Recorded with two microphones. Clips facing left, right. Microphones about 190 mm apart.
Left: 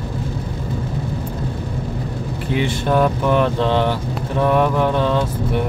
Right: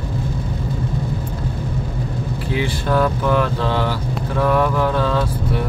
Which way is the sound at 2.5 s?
20° left (ahead or behind).